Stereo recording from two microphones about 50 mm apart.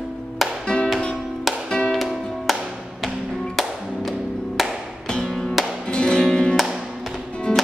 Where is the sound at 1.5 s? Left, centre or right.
Centre.